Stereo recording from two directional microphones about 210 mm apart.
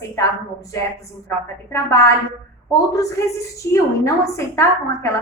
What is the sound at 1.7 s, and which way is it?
A woman's voice, 15° left (ahead or behind).